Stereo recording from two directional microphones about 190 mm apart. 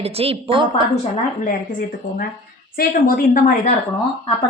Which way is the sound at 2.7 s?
50° left (ahead or behind).